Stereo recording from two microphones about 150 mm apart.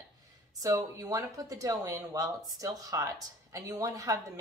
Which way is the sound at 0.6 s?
20° right (ahead or behind).